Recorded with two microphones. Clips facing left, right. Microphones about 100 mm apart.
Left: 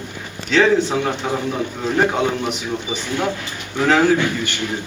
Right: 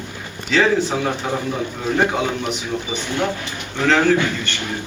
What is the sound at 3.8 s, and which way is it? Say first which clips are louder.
Speech: left 1 dB; 10° left (ahead or behind).